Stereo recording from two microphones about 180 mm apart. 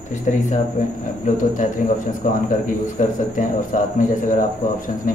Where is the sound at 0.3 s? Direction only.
45° left (ahead or behind).